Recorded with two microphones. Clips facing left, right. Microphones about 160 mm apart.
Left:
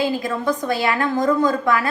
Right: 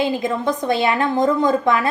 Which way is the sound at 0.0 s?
20° right (ahead or behind).